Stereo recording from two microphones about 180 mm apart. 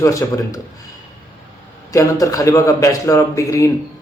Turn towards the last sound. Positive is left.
turn(degrees=15)  # may be behind; listen again after turning